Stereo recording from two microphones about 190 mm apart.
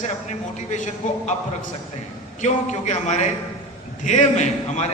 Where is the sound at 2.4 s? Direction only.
40° left (ahead or behind).